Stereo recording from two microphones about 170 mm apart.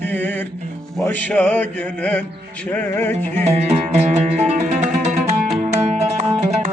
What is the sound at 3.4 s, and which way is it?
Music, 40° right (ahead or behind).